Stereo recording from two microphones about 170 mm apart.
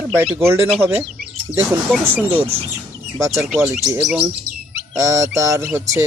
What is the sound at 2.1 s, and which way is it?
Speech, 10° right (ahead or behind).